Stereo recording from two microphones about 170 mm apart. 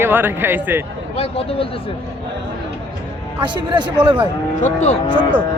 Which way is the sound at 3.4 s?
25° right (ahead or behind).